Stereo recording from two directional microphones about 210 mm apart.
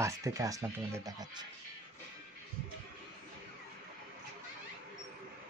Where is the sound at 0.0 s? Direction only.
15° right (ahead or behind).